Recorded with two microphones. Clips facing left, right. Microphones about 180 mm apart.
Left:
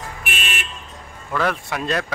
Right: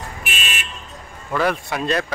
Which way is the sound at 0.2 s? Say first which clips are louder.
Left 1 dB; 55° left (ahead or behind).